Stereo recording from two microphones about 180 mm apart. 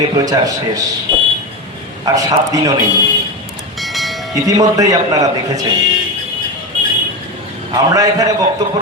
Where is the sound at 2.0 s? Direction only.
20° right (ahead or behind).